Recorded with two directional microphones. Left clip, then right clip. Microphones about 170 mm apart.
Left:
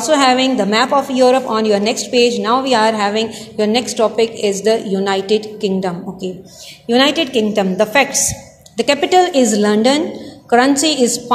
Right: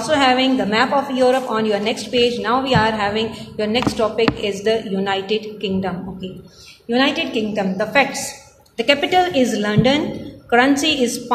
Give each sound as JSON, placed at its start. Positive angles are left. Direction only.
{"t": 0.0, "sound": "a woman's voice", "side_deg": 40}
{"t": 6.9, "sound": "a woman's voice", "side_deg": 60}
{"t": 8.7, "sound": "a woman's voice", "side_deg": 40}